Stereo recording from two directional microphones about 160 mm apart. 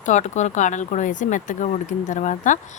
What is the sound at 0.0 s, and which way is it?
Speech, 50° left (ahead or behind).